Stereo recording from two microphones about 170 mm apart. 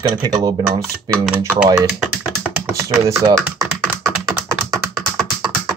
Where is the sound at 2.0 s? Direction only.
10° right (ahead or behind).